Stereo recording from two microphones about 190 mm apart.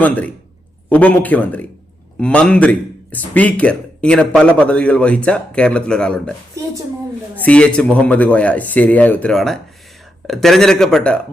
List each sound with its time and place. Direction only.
0.0 s a man's voice: 10° left (ahead or behind)
7.4 s a man's voice: 5° left (ahead or behind)